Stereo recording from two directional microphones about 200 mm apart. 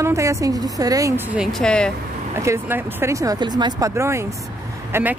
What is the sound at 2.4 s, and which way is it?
Speech, 10° right (ahead or behind).